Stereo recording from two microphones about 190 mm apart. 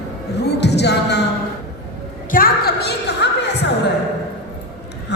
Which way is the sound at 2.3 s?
55° left (ahead or behind).